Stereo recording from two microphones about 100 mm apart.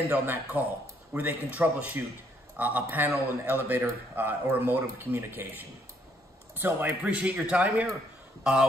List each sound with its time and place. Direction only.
0.1 s a man's voice: 15° right (ahead or behind)